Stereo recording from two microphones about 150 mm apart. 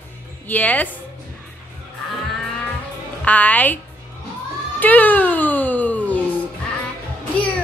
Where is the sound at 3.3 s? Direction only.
10° left (ahead or behind).